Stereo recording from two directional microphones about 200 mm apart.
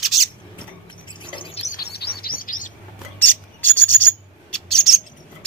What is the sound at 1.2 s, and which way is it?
Bird, 25° left (ahead or behind).